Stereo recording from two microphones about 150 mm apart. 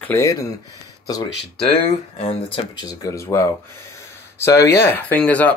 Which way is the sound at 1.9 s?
45° left (ahead or behind).